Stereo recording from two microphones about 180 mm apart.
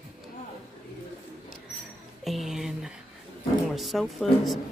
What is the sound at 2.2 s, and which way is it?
Speech, centre (ahead or behind).